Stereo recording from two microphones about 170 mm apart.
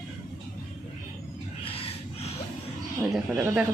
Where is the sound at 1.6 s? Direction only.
35° left (ahead or behind).